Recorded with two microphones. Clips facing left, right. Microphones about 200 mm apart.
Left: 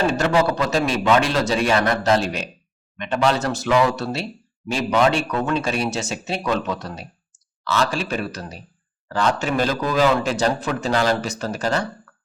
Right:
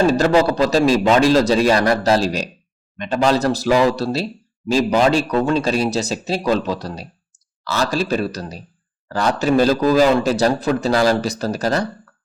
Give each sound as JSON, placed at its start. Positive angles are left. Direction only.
{"t": 0.1, "sound": "speech", "side_deg": -35}